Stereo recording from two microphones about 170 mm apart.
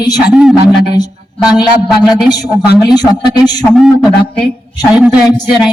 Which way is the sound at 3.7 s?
5° right (ahead or behind).